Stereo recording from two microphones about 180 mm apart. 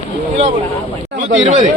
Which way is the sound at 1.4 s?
35° right (ahead or behind).